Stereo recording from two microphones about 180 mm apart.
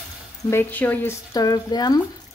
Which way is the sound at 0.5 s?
10° left (ahead or behind).